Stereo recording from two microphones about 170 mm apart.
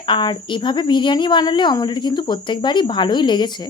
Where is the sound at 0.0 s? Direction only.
25° left (ahead or behind).